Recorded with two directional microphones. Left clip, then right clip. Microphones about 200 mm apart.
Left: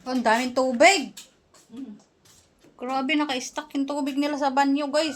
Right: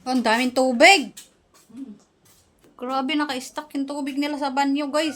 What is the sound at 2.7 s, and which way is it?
A woman's voice, 25° right (ahead or behind).